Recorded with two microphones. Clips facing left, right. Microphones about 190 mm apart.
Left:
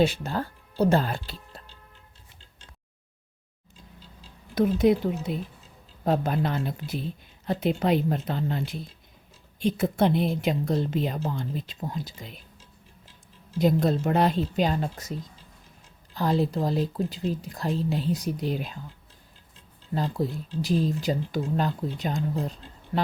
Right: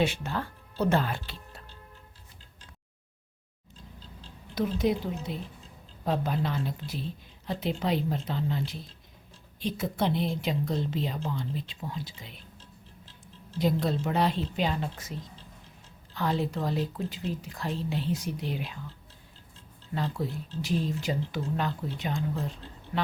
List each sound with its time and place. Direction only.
0.0 s speech: 35° left (ahead or behind)
4.5 s speech: 50° left (ahead or behind)
13.6 s speech: 45° left (ahead or behind)
16.1 s speech: 35° left (ahead or behind)
19.9 s speech: 35° left (ahead or behind)